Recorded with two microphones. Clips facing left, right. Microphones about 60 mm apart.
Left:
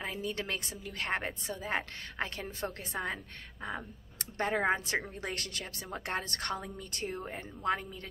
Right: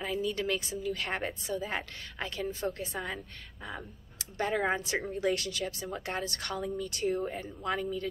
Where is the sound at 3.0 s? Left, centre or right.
Left.